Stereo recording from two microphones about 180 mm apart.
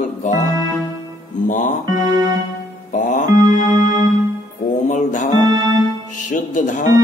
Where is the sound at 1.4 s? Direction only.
45° left (ahead or behind).